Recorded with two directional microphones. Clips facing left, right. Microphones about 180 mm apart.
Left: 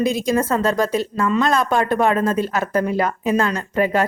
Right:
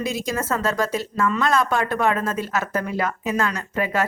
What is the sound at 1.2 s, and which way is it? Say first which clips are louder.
A woman's voice: left 1 dB; 20° left (ahead or behind).